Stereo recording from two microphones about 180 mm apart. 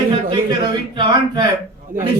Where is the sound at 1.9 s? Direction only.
10° right (ahead or behind).